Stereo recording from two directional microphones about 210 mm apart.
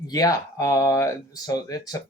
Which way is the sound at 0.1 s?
15° left (ahead or behind).